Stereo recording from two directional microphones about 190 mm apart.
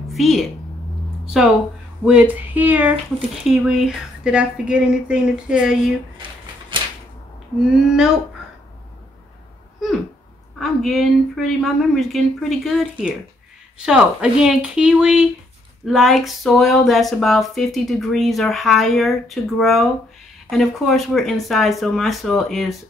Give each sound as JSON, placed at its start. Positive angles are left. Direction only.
{"t": 0.1, "sound": "a woman's voice", "side_deg": 0}
{"t": 2.0, "sound": "a sound", "side_deg": -5}
{"t": 3.4, "sound": "speech", "side_deg": 0}
{"t": 6.1, "sound": "a sound", "side_deg": -25}
{"t": 7.8, "sound": "speech", "side_deg": -5}
{"t": 10.6, "sound": "speech", "side_deg": 0}